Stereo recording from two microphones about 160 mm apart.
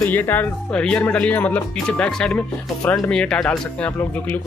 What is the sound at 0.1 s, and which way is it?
Speech, 10° left (ahead or behind).